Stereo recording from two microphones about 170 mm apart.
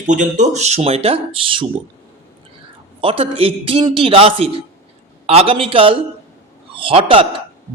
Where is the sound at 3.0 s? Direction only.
35° right (ahead or behind).